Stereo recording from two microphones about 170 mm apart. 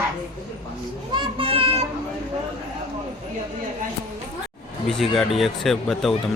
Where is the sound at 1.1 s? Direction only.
30° right (ahead or behind).